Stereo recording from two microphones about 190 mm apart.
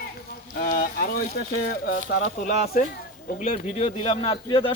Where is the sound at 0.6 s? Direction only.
50° left (ahead or behind).